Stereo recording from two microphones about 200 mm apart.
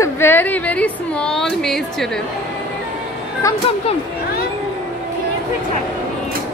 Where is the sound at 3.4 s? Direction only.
15° left (ahead or behind).